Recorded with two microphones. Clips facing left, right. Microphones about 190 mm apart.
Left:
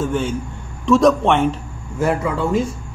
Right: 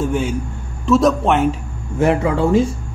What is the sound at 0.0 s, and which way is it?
A man's voice, 10° right (ahead or behind).